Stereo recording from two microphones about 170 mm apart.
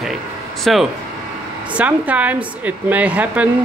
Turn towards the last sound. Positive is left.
turn(degrees=-10)  # may be behind; listen again after turning